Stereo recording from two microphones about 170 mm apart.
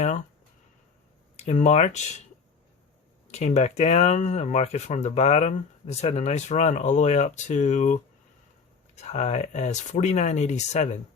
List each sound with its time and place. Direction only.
1.4 s speech: 45° left (ahead or behind)
3.2 s speech: 40° left (ahead or behind)
9.0 s speech: 40° left (ahead or behind)